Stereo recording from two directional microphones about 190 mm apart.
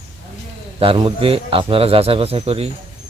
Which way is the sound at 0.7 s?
30° right (ahead or behind).